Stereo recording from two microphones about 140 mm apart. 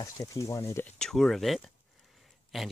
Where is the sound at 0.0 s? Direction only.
25° left (ahead or behind).